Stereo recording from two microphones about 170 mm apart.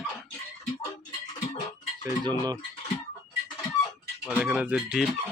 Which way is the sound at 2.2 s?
20° right (ahead or behind).